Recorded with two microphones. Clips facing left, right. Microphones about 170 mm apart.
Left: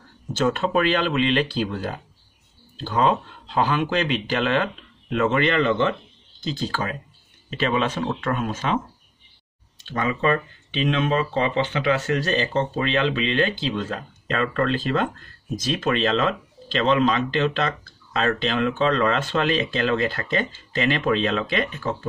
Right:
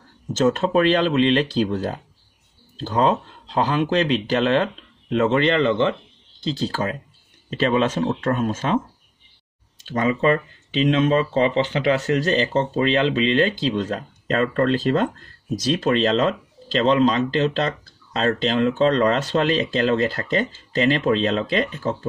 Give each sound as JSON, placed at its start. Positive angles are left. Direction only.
{"t": 0.3, "sound": "speech", "side_deg": -40}
{"t": 9.9, "sound": "speech", "side_deg": -30}